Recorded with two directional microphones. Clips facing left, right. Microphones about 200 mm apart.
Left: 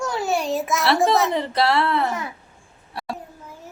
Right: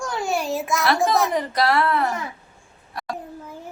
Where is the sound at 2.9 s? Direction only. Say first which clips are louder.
Even; 30° left (ahead or behind).